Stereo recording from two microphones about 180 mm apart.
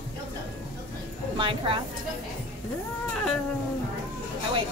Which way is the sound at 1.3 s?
30° right (ahead or behind).